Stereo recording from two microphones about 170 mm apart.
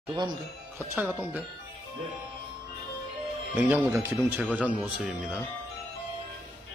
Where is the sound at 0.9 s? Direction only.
10° right (ahead or behind).